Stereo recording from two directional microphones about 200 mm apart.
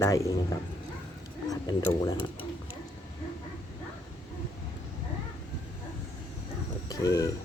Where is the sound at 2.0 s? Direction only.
20° left (ahead or behind).